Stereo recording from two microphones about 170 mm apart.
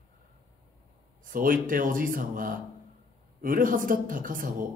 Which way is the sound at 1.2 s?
55° right (ahead or behind).